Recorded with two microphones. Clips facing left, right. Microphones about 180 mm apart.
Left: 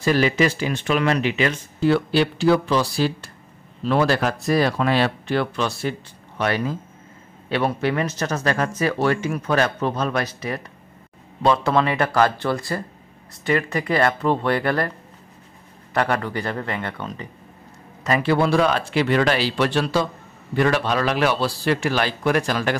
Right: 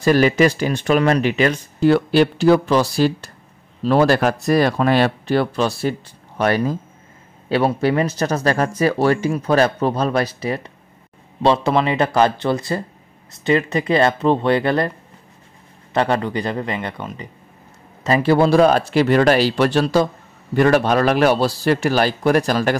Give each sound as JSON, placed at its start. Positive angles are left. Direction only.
{"t": 0.0, "sound": "speech", "side_deg": -45}
{"t": 15.9, "sound": "speech", "side_deg": -25}
{"t": 18.0, "sound": "speech", "side_deg": -35}